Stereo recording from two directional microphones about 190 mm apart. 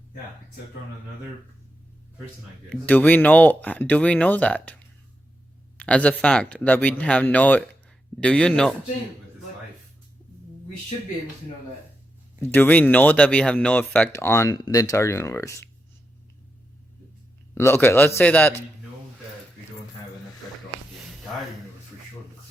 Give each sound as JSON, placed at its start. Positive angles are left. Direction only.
{"t": 2.6, "sound": "speech", "side_deg": 10}
{"t": 5.7, "sound": "a sound", "side_deg": 5}
{"t": 6.2, "sound": "speech", "side_deg": 5}
{"t": 12.4, "sound": "speech", "side_deg": 10}
{"t": 17.5, "sound": "speech", "side_deg": 10}